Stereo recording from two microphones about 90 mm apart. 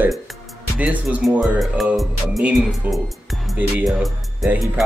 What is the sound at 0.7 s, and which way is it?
Speech, 15° right (ahead or behind).